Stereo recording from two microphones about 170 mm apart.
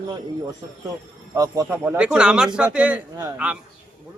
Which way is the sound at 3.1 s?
20° right (ahead or behind).